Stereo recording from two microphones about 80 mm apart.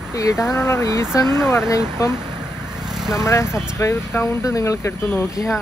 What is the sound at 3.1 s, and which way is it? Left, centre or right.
Speech, left.